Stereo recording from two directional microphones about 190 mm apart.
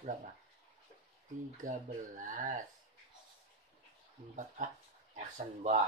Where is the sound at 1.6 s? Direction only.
40° right (ahead or behind).